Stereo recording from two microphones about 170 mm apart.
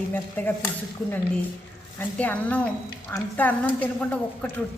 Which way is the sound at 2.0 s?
10° left (ahead or behind).